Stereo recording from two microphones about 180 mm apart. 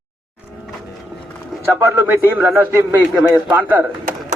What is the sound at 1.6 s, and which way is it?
A man's voice, 10° right (ahead or behind).